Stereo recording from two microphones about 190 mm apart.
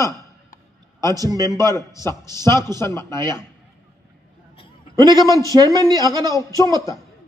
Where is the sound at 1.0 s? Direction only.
20° right (ahead or behind).